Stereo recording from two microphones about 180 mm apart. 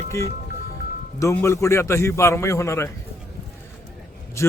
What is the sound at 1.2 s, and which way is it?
Speech, 15° left (ahead or behind).